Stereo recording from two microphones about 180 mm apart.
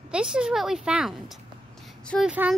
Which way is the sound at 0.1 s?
5° right (ahead or behind).